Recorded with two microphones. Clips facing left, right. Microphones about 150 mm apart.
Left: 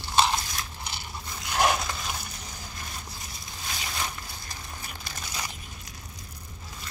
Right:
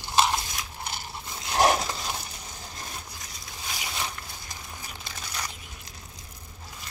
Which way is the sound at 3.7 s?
10° right (ahead or behind).